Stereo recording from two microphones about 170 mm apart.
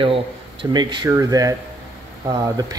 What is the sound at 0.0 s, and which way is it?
Speech, 30° right (ahead or behind).